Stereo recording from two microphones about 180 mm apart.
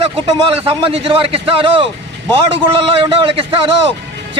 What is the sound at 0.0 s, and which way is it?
Speech, 30° right (ahead or behind).